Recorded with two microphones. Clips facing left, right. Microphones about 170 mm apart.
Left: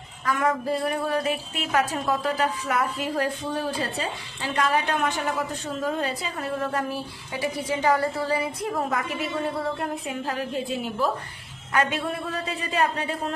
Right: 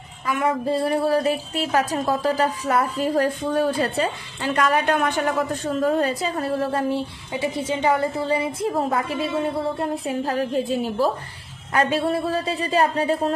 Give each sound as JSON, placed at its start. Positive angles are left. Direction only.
{"t": 0.3, "sound": "a sound", "side_deg": -20}
{"t": 0.7, "sound": "speech", "side_deg": -30}
{"t": 4.0, "sound": "a woman's voice", "side_deg": -55}
{"t": 5.8, "sound": "a woman's voice", "side_deg": -45}